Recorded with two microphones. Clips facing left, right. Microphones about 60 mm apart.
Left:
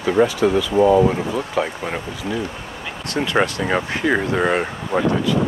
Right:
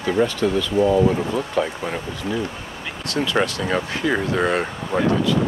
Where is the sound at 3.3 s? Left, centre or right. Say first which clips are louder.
Left 3 dB; left.